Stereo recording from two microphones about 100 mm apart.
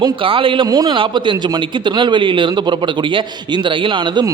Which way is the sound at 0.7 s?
40° right (ahead or behind).